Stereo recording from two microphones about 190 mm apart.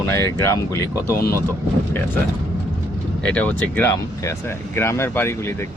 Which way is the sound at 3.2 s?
5° left (ahead or behind).